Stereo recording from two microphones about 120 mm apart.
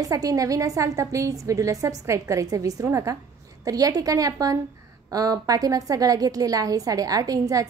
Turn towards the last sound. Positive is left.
turn(degrees=-30)  # may be behind; listen again after turning